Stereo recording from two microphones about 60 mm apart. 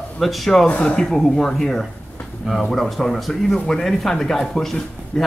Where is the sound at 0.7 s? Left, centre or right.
Centre.